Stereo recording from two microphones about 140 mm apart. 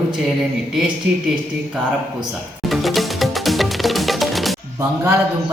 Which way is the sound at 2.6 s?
Centre (ahead or behind).